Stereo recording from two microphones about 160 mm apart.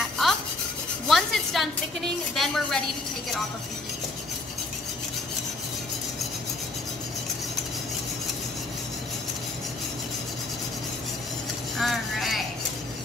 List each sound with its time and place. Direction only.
0.2 s rub: centre (ahead or behind)
1.0 s a woman's voice: centre (ahead or behind)
11.8 s a sound: centre (ahead or behind)